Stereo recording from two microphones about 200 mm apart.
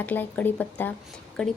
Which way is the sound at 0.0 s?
10° left (ahead or behind).